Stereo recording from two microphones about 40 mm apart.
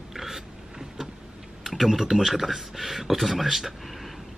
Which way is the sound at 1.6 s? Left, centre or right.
Centre.